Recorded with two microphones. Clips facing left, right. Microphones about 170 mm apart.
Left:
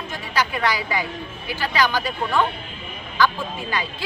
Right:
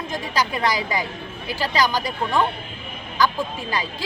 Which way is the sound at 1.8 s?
15° right (ahead or behind).